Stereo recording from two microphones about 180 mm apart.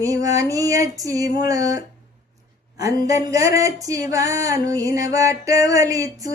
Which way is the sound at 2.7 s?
20° right (ahead or behind).